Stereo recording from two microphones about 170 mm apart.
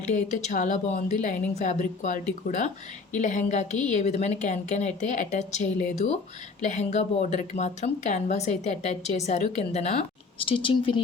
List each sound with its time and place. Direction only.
0.1 s a woman's voice: 45° left (ahead or behind)